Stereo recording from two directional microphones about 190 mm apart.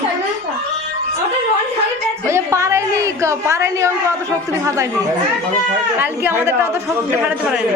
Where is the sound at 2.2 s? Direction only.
15° right (ahead or behind).